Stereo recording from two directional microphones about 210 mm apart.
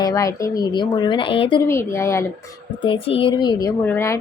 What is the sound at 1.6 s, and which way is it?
Speech, 15° left (ahead or behind).